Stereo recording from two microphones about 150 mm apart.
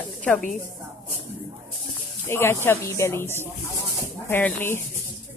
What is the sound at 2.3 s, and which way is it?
Speech, 15° left (ahead or behind).